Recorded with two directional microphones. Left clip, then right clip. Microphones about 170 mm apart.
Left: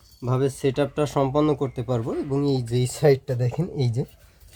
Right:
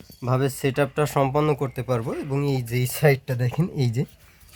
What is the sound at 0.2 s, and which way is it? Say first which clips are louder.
Speech: even; 10° right (ahead or behind).